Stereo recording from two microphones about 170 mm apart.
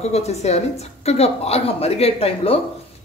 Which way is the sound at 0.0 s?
40° left (ahead or behind).